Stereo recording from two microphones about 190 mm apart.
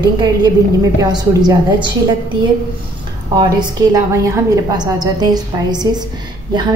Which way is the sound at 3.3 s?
20° right (ahead or behind).